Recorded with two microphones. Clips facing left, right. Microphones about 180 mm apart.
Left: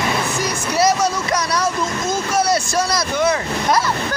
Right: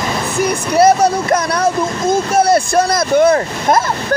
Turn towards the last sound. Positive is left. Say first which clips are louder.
# right 5 dB
turn(degrees=-50)  # may be behind; listen again after turning